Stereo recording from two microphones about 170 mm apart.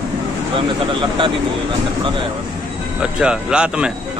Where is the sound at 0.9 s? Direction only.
30° right (ahead or behind).